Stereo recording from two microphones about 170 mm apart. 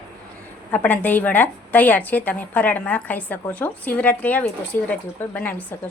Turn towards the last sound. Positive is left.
turn(degrees=10)  # may be behind; listen again after turning